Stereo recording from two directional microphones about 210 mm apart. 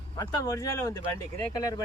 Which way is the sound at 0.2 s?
15° left (ahead or behind).